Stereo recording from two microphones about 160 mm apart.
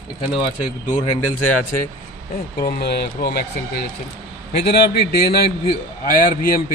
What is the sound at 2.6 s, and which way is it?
Speech, 75° left (ahead or behind).